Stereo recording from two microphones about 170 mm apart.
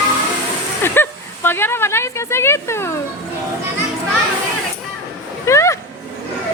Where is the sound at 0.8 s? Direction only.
15° left (ahead or behind).